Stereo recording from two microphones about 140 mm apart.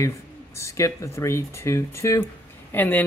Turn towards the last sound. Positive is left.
turn(degrees=15)  # may be behind; listen again after turning